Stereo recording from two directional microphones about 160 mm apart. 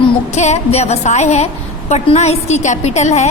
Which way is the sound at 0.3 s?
45° left (ahead or behind).